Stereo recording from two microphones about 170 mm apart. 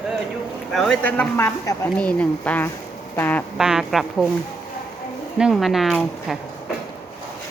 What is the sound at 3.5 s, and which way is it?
Speech, 5° right (ahead or behind).